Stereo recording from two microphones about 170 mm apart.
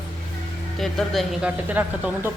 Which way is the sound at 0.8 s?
Centre (ahead or behind).